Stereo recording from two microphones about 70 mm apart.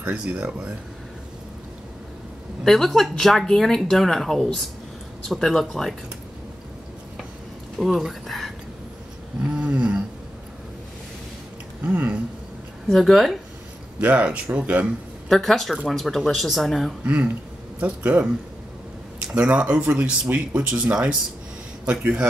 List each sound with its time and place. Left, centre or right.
0.0 s speech: centre
2.6 s a woman's voice: centre
7.7 s speech: centre
9.5 s a sound: centre
11.8 s speech: right
12.8 s a woman's voice: centre
13.9 s speech: centre
15.2 s a woman's voice: centre
17.0 s speech: right
19.3 s speech: centre